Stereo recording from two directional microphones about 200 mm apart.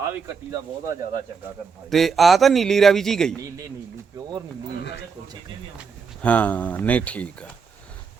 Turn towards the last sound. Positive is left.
turn(degrees=5)  # may be behind; listen again after turning